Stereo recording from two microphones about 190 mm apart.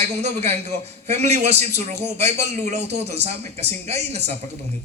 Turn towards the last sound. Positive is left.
turn(degrees=-35)  # may be behind; listen again after turning